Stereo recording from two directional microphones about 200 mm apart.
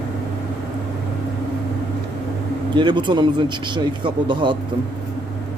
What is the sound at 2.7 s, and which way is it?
Speech, 25° right (ahead or behind).